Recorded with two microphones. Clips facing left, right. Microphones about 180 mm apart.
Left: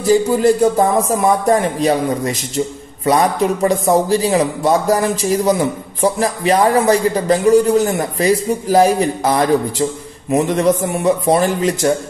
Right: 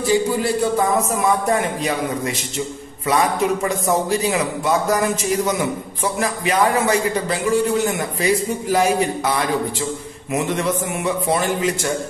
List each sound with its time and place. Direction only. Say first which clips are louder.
0.0 s a man's voice: left 6 dB; 40° left (ahead or behind)